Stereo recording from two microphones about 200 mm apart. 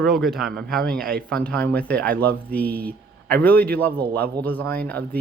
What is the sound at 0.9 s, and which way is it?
Speech, 5° left (ahead or behind).